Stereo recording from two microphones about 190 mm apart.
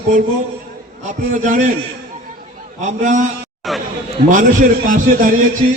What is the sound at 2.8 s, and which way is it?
Speech, 40° right (ahead or behind).